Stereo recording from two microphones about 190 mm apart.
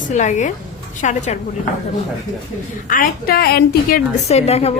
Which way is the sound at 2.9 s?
50° left (ahead or behind).